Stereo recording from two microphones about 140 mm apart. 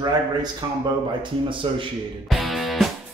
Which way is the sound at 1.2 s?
35° right (ahead or behind).